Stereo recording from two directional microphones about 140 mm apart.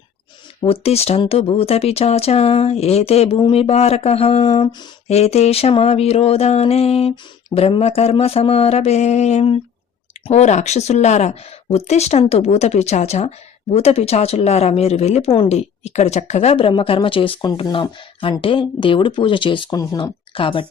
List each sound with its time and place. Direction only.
0.6 s speech: 45° left (ahead or behind)